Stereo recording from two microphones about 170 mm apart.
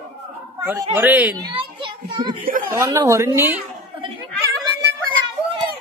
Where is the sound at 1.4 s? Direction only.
30° right (ahead or behind).